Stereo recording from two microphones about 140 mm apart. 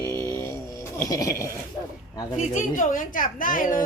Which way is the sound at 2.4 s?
65° left (ahead or behind).